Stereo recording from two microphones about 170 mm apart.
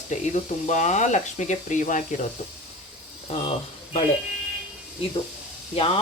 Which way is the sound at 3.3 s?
40° left (ahead or behind).